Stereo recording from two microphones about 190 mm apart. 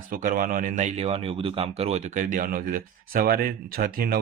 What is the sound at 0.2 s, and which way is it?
Speech, 45° right (ahead or behind).